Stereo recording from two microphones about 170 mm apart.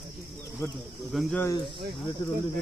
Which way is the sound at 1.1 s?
Centre (ahead or behind).